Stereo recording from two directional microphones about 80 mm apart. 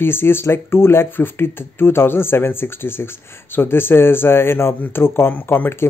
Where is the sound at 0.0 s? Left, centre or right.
Left.